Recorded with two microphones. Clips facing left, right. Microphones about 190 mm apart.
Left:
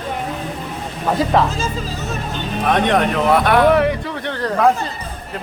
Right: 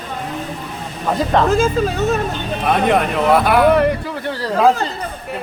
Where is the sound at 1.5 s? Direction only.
60° right (ahead or behind).